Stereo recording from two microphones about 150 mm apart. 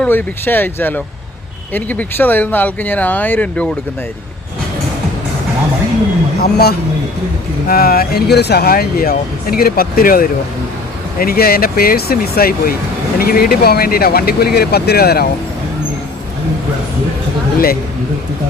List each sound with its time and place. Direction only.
0.0 s speech: 15° left (ahead or behind)
6.4 s speech: 90° left